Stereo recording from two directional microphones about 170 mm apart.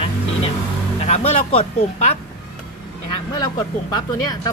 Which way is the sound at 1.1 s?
40° left (ahead or behind).